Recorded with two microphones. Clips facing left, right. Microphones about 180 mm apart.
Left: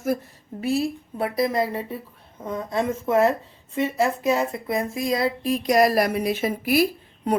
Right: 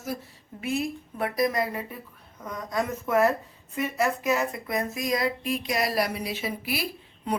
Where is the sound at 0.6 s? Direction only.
35° left (ahead or behind).